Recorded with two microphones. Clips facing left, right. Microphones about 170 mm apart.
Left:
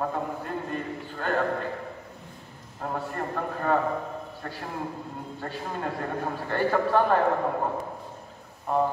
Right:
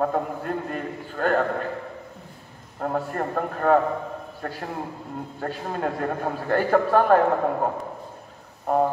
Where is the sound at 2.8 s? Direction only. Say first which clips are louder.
Right 5 dB; 50° right (ahead or behind).